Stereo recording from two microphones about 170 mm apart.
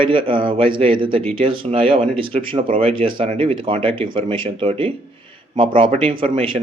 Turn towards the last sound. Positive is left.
turn(degrees=-30)  # may be behind; listen again after turning